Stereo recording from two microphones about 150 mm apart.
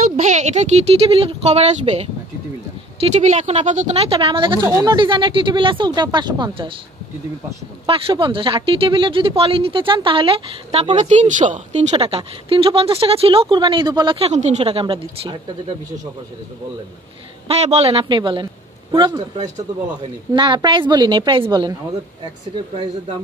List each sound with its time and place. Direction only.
0.2 s speech: 50° right (ahead or behind); by 6.7 s 30° right (ahead or behind)
7.8 s speech: 35° right (ahead or behind); by 12.0 s 55° right (ahead or behind)
12.4 s speech: 40° right (ahead or behind)
17.5 s speech: 45° right (ahead or behind)
18.0 s speech: 30° right (ahead or behind)